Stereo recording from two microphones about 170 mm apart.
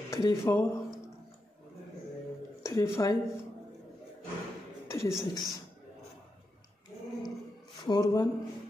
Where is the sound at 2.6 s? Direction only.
20° left (ahead or behind).